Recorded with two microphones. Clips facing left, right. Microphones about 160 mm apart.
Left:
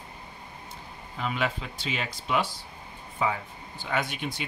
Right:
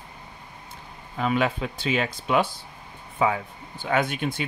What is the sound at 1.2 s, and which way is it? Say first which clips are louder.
Speech: right 6 dB; 55° right (ahead or behind).